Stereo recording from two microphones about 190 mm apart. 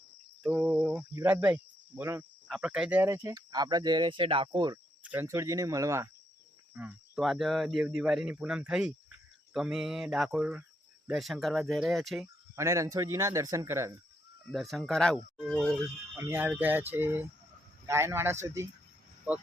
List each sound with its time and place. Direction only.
0.4 s cricket: 5° right (ahead or behind)
1.1 s speech: 10° right (ahead or behind)
6.7 s speech: 5° right (ahead or behind)
12.5 s speech: 15° right (ahead or behind)
14.5 s speech: centre (ahead or behind)
16.1 s speech: 10° right (ahead or behind)